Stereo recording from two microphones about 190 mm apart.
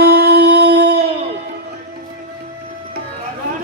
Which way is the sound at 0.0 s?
60° right (ahead or behind).